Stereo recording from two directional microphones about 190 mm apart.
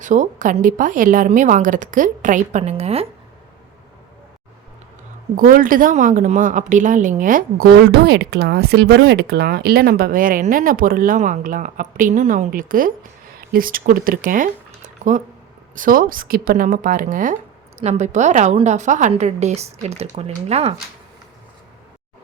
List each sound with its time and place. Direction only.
0.0 s speech: 40° right (ahead or behind)
5.4 s speech: 45° right (ahead or behind)
7.9 s a woman's voice: 60° right (ahead or behind); by 20.7 s 35° right (ahead or behind)